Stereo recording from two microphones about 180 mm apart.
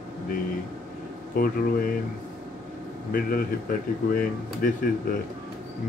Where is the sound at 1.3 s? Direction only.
55° left (ahead or behind).